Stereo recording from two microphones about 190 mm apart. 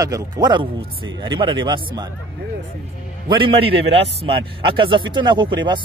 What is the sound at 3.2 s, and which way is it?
A man's voice, 25° right (ahead or behind).